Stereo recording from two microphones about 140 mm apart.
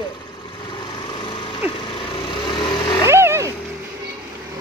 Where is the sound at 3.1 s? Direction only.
20° right (ahead or behind).